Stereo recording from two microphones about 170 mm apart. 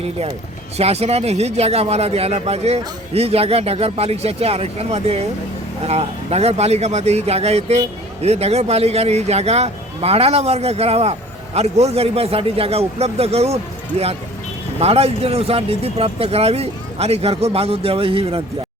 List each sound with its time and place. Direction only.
0.8 s speech: 40° right (ahead or behind)
14.8 s speech: 35° right (ahead or behind)